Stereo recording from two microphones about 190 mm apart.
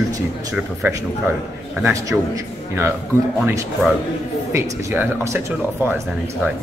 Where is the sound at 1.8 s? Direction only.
15° right (ahead or behind).